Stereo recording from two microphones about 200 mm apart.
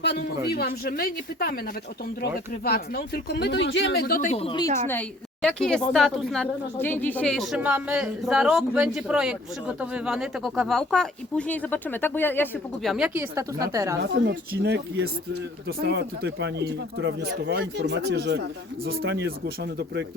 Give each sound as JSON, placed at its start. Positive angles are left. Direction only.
{"t": 0.4, "sound": "speech", "side_deg": 50}
{"t": 4.9, "sound": "a woman's voice", "side_deg": 5}
{"t": 12.9, "sound": "a woman's voice", "side_deg": -5}
{"t": 13.3, "sound": "a woman's voice", "side_deg": -15}
{"t": 14.0, "sound": "speech", "side_deg": -55}